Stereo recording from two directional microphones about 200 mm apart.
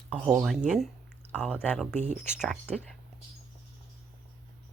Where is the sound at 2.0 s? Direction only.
35° right (ahead or behind).